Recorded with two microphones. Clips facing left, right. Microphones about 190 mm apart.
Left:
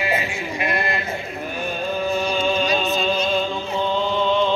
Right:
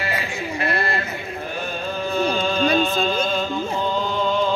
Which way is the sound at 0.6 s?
15° left (ahead or behind).